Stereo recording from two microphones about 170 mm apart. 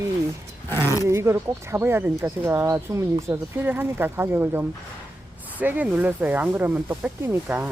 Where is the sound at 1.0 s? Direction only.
15° right (ahead or behind).